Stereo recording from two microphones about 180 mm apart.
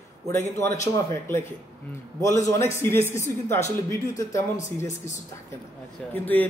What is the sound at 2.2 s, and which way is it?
Speech, 15° left (ahead or behind).